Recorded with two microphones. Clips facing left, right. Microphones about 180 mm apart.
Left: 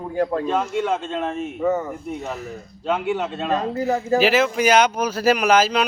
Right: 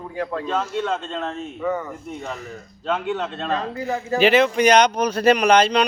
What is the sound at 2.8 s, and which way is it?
Speech, 10° left (ahead or behind).